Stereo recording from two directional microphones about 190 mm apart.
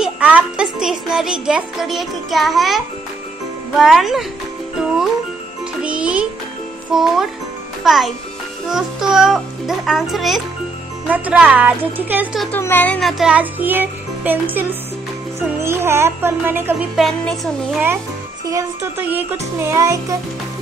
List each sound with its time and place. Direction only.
0.0 s speech: 5° right (ahead or behind)
3.7 s music: centre (ahead or behind)
7.8 s a child's voice: centre (ahead or behind)
8.6 s music: 5° right (ahead or behind)
12.5 s music: 10° left (ahead or behind); by 14.4 s 10° right (ahead or behind)
15.6 s music: 15° right (ahead or behind)
18.5 s music: 15° right (ahead or behind)